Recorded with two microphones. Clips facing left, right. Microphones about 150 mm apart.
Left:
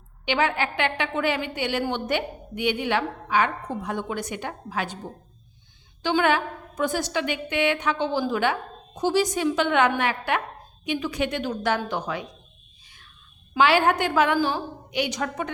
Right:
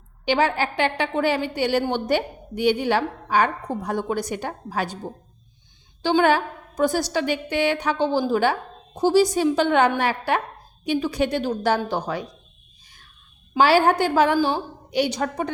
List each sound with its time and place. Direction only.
0.3 s a woman's voice: 35° right (ahead or behind)
6.0 s a woman's voice: 35° right (ahead or behind)
13.6 s a woman's voice: 35° right (ahead or behind)